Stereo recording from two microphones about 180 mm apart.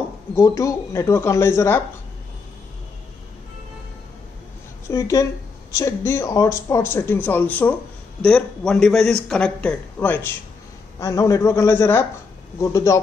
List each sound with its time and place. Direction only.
0.4 s speech: 20° left (ahead or behind)
4.8 s a man's voice: 15° left (ahead or behind)